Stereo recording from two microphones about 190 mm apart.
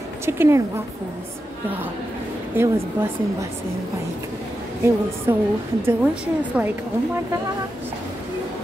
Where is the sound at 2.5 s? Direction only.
15° right (ahead or behind).